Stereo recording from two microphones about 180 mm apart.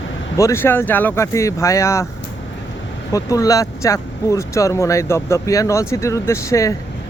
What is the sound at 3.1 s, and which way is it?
Speech, 20° left (ahead or behind).